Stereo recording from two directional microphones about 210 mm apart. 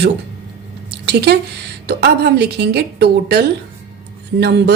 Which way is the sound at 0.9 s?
50° right (ahead or behind).